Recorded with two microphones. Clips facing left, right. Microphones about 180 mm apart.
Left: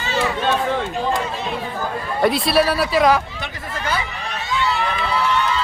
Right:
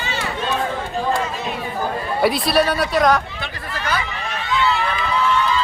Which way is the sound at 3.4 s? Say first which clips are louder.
Even; 25° left (ahead or behind).